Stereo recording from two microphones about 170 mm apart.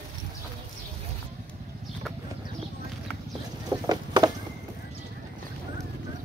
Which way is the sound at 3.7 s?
25° right (ahead or behind).